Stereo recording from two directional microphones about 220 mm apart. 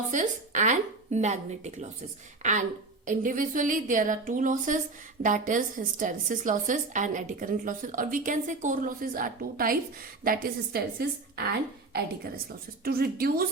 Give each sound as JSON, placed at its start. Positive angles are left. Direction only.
{"t": 0.1, "sound": "a woman's voice", "side_deg": -35}
{"t": 11.9, "sound": "a woman's voice", "side_deg": -45}